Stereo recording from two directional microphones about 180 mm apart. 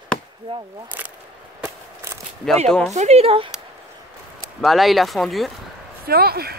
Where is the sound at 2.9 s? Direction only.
40° right (ahead or behind).